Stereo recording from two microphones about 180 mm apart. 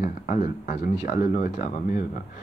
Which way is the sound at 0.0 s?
45° left (ahead or behind).